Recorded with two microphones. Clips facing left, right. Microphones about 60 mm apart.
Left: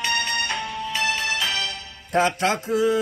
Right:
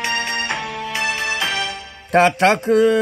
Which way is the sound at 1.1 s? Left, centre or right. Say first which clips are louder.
Right 3 dB; right.